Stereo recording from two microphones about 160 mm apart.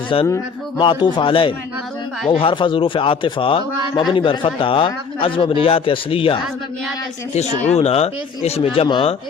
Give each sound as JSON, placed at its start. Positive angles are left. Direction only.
{"t": 0.1, "sound": "speech", "side_deg": 35}